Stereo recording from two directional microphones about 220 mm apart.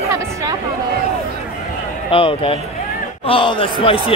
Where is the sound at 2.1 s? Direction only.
25° left (ahead or behind).